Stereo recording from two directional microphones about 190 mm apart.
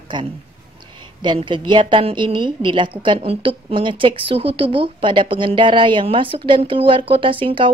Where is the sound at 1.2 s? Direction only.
25° right (ahead or behind).